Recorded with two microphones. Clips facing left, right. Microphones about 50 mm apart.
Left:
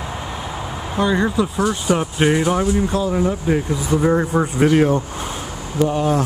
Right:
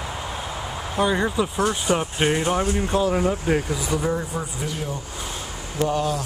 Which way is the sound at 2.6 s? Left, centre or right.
Right.